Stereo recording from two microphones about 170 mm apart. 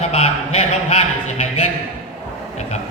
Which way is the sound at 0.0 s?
40° left (ahead or behind).